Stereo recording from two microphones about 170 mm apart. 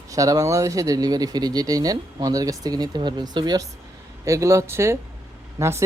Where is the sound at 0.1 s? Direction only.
20° right (ahead or behind).